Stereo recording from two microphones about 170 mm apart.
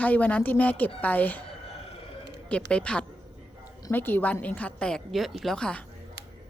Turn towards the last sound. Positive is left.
turn(degrees=5)  # may be behind; listen again after turning